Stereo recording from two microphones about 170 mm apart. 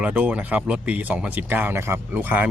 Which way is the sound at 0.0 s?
10° right (ahead or behind).